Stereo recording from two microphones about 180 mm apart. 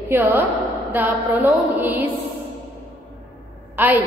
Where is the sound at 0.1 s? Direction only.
10° right (ahead or behind).